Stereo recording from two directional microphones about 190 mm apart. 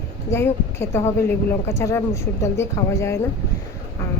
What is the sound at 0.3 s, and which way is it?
Speech, 15° left (ahead or behind).